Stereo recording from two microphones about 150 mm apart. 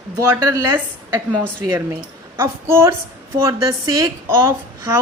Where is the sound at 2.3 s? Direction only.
20° right (ahead or behind).